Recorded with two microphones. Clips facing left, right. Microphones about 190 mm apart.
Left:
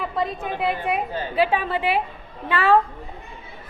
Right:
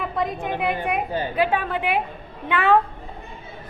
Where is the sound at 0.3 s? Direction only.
15° right (ahead or behind).